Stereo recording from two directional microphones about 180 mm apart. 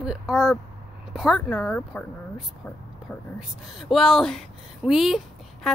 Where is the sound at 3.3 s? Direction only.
Centre (ahead or behind).